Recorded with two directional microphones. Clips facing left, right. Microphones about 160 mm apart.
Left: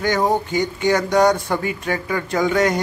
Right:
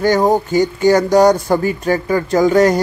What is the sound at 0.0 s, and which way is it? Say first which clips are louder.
Speech: right 6 dB; 40° right (ahead or behind).